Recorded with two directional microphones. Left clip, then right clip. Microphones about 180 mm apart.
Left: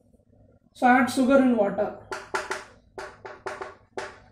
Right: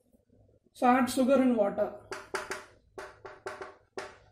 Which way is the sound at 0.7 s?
45° right (ahead or behind).